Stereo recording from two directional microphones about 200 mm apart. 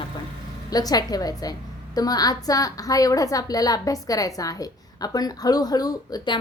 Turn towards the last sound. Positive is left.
turn(degrees=20)  # may be behind; listen again after turning